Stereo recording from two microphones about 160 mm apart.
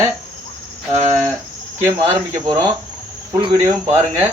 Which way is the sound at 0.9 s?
45° right (ahead or behind).